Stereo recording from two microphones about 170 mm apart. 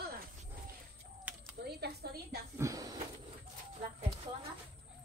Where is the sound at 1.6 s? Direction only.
70° right (ahead or behind).